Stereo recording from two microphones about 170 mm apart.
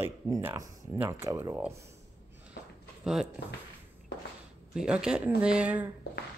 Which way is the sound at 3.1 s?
5° right (ahead or behind).